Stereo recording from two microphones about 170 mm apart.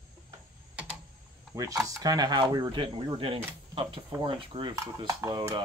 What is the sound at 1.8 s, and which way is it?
Speech, 20° right (ahead or behind).